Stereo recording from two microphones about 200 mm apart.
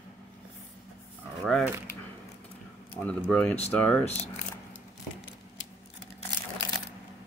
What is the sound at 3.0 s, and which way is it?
Speech, 5° left (ahead or behind).